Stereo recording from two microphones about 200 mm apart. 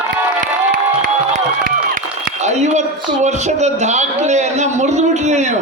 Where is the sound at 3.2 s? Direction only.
35° right (ahead or behind).